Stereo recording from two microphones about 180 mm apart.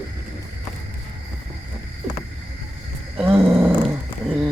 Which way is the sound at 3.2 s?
15° right (ahead or behind).